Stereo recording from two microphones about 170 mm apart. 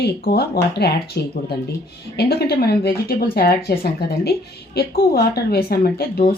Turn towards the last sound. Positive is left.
turn(degrees=65)  # may be behind; listen again after turning